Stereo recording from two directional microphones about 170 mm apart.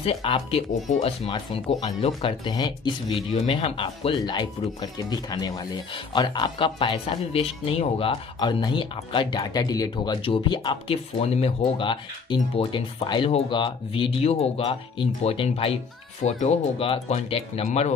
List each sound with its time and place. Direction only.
0.0 s speech: 35° left (ahead or behind)
3.3 s speech: 40° left (ahead or behind)